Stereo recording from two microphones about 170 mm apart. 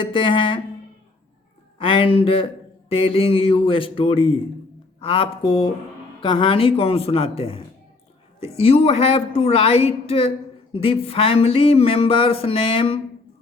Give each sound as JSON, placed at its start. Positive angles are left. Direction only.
{"t": 0.0, "sound": "speech", "side_deg": 30}
{"t": 1.8, "sound": "a woman's voice", "side_deg": 30}